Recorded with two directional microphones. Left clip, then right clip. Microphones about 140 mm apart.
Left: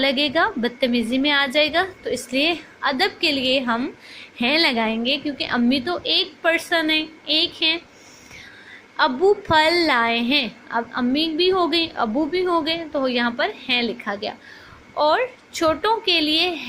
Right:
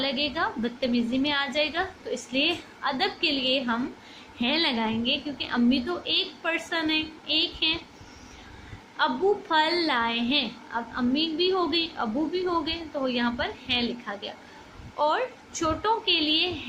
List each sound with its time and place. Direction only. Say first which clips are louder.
0.0 s a woman's voice: left 8 dB; 45° left (ahead or behind)
9.0 s a woman's voice: left 7 dB; 45° left (ahead or behind)